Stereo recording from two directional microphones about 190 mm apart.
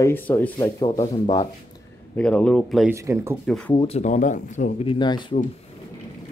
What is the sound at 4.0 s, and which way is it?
Speech, 40° left (ahead or behind).